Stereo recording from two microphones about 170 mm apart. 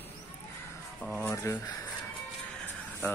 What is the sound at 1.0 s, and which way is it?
Speech, 10° left (ahead or behind).